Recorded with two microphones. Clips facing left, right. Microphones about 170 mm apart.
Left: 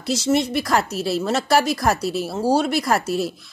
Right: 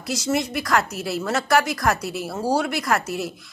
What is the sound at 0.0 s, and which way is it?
Speech, 30° left (ahead or behind).